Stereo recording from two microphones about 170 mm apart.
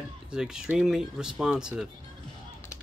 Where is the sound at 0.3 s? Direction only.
5° right (ahead or behind).